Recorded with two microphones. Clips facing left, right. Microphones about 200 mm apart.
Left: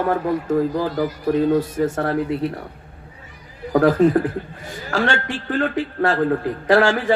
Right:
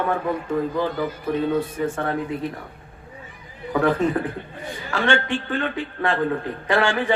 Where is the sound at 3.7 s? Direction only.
40° left (ahead or behind).